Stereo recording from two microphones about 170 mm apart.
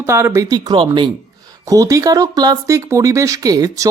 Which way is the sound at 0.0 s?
15° right (ahead or behind).